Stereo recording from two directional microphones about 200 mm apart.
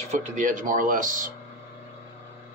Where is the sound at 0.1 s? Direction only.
40° right (ahead or behind).